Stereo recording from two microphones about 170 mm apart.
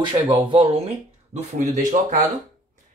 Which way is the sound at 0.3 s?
30° right (ahead or behind).